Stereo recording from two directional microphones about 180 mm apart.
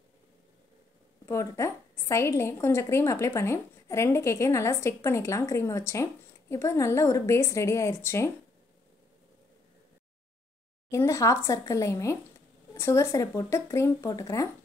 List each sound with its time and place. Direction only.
1.2 s a woman's voice: 15° left (ahead or behind)
10.9 s a woman's voice: 15° left (ahead or behind)